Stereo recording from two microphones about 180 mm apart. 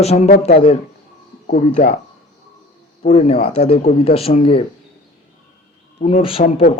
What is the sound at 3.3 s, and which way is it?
Speech, 60° left (ahead or behind).